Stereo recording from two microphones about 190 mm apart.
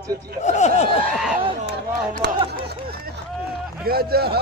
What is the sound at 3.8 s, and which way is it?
Speech, 55° right (ahead or behind).